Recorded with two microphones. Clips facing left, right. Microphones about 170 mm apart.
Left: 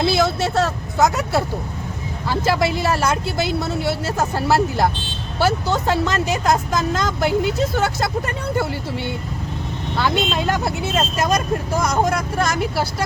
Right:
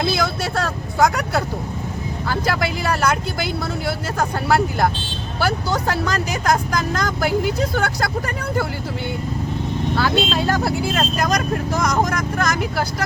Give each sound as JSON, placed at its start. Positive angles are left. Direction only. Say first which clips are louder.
{"t": 0.0, "sound": "vehicle", "louder": "left 3 dB", "side_deg": 25}
{"t": 1.0, "sound": "speech", "louder": "even", "side_deg": 25}
{"t": 10.0, "sound": "speech", "louder": "left 1 dB", "side_deg": 20}